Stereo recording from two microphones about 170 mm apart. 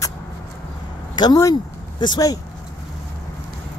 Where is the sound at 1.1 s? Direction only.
20° left (ahead or behind).